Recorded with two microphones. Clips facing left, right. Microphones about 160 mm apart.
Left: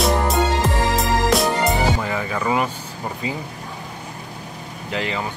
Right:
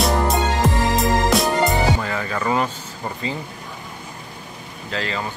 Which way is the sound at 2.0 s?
10° left (ahead or behind).